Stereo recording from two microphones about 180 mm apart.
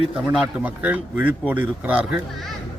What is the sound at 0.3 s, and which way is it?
Speech, 10° right (ahead or behind).